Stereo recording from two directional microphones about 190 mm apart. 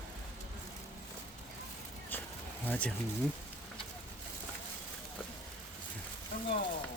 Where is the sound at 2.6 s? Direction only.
5° left (ahead or behind).